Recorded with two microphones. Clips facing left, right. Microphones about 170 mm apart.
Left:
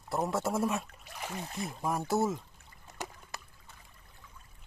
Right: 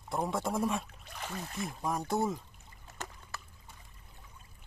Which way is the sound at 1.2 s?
15° left (ahead or behind).